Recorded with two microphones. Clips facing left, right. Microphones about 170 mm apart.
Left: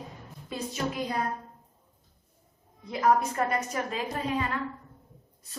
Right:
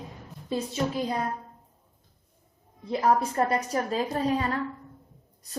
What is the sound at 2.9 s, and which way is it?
A woman's voice, 30° right (ahead or behind).